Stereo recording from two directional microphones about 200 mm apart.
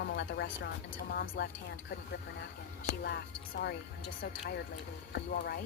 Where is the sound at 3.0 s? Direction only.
55° left (ahead or behind).